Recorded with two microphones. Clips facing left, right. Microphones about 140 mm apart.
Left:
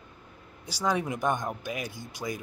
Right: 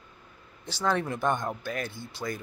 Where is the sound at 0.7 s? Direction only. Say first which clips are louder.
Even; 10° left (ahead or behind).